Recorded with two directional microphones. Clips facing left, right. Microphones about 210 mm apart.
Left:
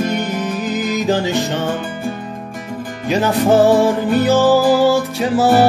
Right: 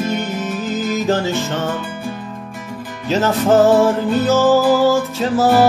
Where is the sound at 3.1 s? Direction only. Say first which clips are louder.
Left 1 dB; 15° left (ahead or behind).